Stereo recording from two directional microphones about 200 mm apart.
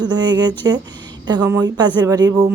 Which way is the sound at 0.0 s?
20° right (ahead or behind).